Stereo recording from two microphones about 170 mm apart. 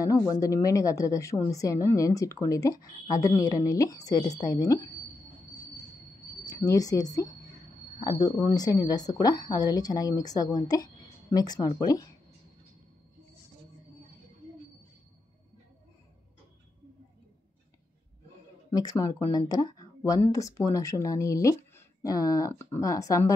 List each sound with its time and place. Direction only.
0.0 s a woman's voice: 20° left (ahead or behind)
6.4 s a woman's voice: 20° left (ahead or behind)
18.7 s a woman's voice: 20° left (ahead or behind)